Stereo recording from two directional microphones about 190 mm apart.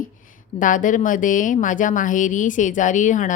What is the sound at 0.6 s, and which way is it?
Speech, 45° left (ahead or behind).